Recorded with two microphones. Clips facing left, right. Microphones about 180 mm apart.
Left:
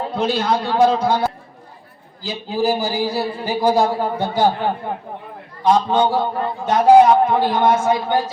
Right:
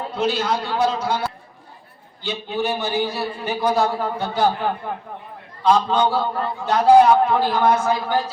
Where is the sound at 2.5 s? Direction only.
35° left (ahead or behind).